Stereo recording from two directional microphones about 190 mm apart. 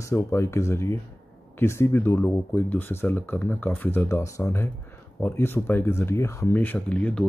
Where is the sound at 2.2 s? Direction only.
Centre (ahead or behind).